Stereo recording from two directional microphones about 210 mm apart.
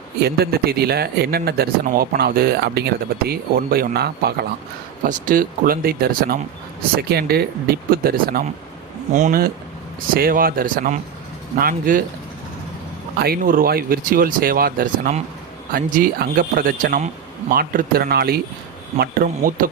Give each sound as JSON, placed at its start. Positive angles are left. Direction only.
{"t": 0.3, "sound": "speech", "side_deg": -45}
{"t": 13.1, "sound": "speech", "side_deg": -45}